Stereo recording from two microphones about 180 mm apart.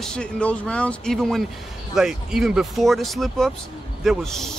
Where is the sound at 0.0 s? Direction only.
5° left (ahead or behind).